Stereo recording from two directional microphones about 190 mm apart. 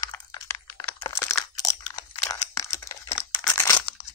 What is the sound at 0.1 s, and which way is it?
Crunch, 15° left (ahead or behind).